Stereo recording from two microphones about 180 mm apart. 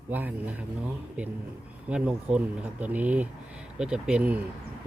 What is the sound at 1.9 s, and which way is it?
Speech, 5° right (ahead or behind).